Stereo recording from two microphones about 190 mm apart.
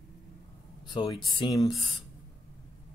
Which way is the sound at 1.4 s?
20° left (ahead or behind).